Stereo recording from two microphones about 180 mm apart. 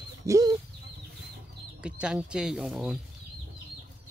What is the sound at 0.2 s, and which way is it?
Bird, 20° right (ahead or behind).